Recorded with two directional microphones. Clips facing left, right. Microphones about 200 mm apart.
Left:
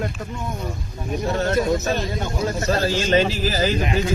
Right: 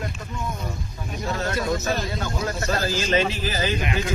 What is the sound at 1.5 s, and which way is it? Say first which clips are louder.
Speech: left 4 dB; 30° left (ahead or behind).